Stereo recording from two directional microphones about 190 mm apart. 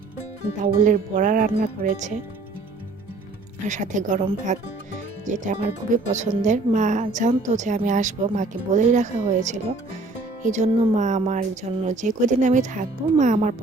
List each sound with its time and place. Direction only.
0.6 s speech: 45° right (ahead or behind)
3.7 s a woman's voice: 40° right (ahead or behind)